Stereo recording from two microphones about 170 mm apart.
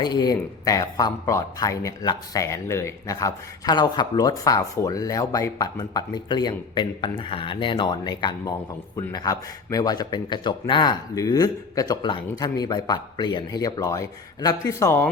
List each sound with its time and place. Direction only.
0.0 s speech: 25° left (ahead or behind)